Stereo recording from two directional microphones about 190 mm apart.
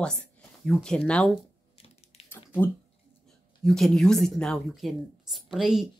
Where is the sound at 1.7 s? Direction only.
30° left (ahead or behind).